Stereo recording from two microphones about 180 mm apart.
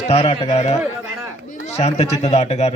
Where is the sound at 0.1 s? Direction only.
35° left (ahead or behind).